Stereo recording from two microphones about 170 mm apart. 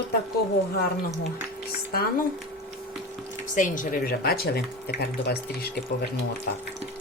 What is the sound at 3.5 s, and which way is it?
Speech, 50° left (ahead or behind).